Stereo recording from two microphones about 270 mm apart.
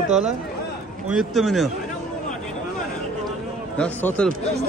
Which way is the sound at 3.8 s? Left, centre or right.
Centre.